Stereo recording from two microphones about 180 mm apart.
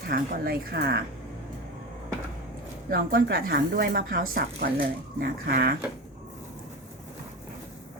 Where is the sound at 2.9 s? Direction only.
55° right (ahead or behind).